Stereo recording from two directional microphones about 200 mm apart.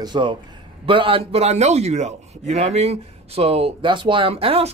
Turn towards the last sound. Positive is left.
turn(degrees=-30)  # may be behind; listen again after turning